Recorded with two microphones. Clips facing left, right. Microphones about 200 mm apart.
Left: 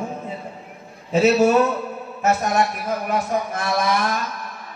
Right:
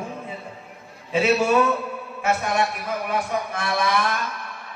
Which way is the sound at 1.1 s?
40° left (ahead or behind).